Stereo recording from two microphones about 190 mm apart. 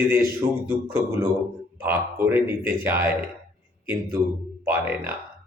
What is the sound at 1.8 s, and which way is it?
A man's voice, 10° right (ahead or behind).